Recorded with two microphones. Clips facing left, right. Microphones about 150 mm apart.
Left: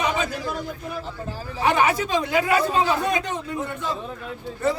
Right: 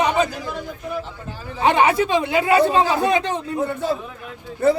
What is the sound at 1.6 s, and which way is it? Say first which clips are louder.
Speech: right 4 dB; 25° right (ahead or behind).